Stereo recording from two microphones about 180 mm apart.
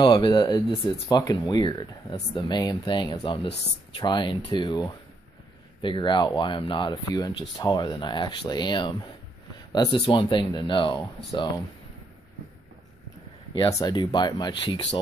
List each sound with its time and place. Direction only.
0.0 s speech: 25° left (ahead or behind)
13.6 s speech: 20° left (ahead or behind)